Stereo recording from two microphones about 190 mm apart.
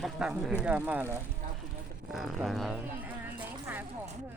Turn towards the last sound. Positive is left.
turn(degrees=-10)  # may be behind; listen again after turning